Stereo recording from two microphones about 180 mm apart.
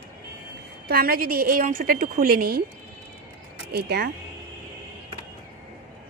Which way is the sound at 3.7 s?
60° right (ahead or behind).